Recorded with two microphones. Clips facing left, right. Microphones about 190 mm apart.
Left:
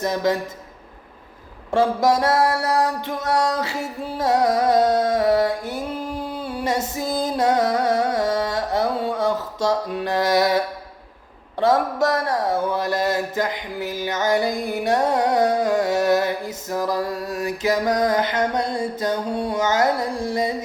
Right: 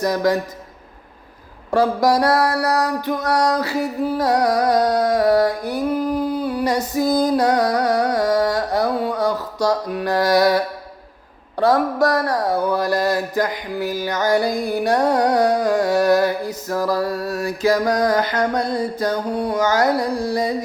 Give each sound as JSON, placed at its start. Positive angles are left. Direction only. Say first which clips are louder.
{"t": 0.0, "sound": "music", "louder": "right 3 dB", "side_deg": 25}
{"t": 1.7, "sound": "music", "louder": "right 2 dB", "side_deg": 25}
{"t": 6.3, "sound": "female singing", "louder": "right 4 dB", "side_deg": 25}
{"t": 7.2, "sound": "carnatic music", "louder": "even", "side_deg": 25}
{"t": 11.6, "sound": "music", "louder": "right 2 dB", "side_deg": 20}